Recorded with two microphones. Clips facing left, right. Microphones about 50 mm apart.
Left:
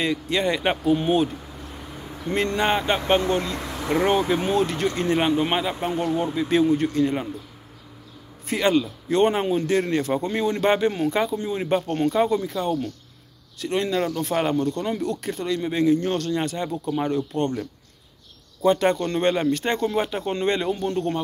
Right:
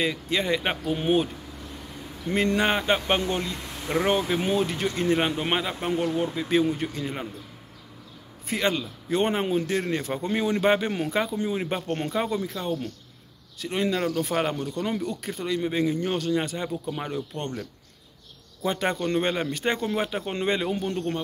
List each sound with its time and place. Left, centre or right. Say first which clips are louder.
0.0 s speech: left 3 dB; centre
3.2 s speech: left 4 dB; left
3.5 s a sound: left 6 dB; left
3.9 s speech: left 3 dB; centre
8.5 s speech: left 5 dB; centre
18.6 s speech: left 7 dB; centre